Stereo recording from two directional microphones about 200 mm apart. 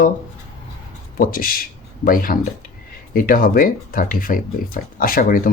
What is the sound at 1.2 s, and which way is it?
Speech, 45° left (ahead or behind).